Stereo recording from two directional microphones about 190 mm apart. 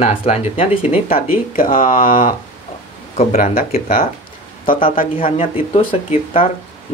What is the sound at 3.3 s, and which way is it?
Speech, 50° left (ahead or behind).